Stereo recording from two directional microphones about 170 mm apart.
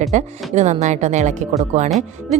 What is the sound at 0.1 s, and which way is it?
Speech, 45° right (ahead or behind).